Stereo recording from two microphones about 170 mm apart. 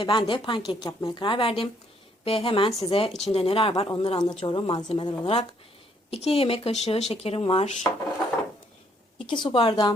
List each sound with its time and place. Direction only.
0.0 s a woman's voice: 30° left (ahead or behind)
9.1 s a woman's voice: 30° left (ahead or behind)